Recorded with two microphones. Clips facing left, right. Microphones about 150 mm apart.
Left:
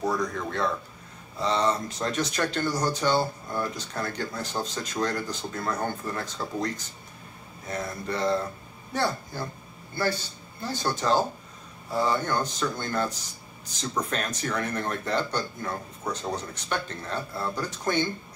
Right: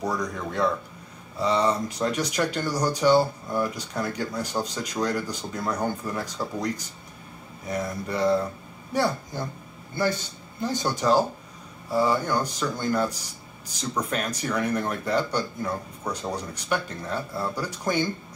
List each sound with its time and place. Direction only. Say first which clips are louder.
0.0 s speech: left 1 dB; 15° right (ahead or behind)